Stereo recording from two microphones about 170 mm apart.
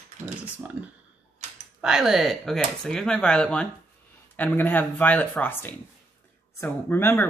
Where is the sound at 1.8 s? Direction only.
5° right (ahead or behind).